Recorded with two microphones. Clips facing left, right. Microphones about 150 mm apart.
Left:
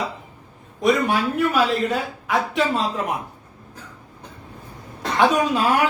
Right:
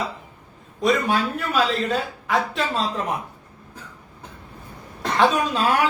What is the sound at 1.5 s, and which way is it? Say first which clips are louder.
A man's voice: left 1 dB; 15° left (ahead or behind).